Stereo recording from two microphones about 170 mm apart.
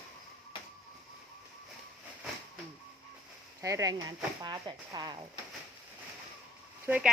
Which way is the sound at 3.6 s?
20° right (ahead or behind).